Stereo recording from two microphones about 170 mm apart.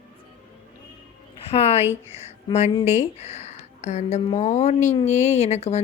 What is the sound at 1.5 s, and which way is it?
Speech, 35° left (ahead or behind).